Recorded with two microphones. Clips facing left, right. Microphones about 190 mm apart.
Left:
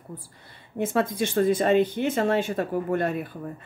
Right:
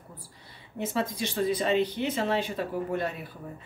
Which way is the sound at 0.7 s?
50° left (ahead or behind).